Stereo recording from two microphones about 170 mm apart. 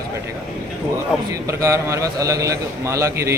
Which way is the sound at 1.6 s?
20° right (ahead or behind).